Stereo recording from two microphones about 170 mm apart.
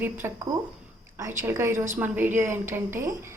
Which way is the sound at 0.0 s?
15° right (ahead or behind).